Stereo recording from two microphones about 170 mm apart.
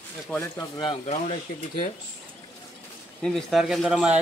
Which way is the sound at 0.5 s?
30° left (ahead or behind).